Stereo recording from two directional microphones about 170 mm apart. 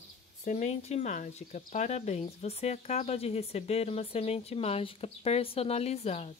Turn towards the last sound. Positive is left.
turn(degrees=40)  # may be behind; listen again after turning